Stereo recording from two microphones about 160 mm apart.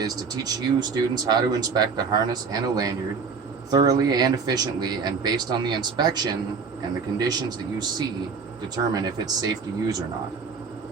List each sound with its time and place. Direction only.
0.0 s speech: 25° right (ahead or behind)